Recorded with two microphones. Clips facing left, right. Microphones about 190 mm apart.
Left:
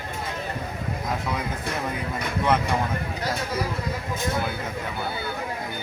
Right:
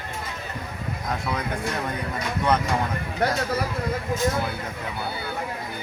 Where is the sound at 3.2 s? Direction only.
60° right (ahead or behind).